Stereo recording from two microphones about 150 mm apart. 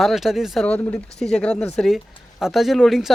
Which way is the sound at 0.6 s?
10° left (ahead or behind).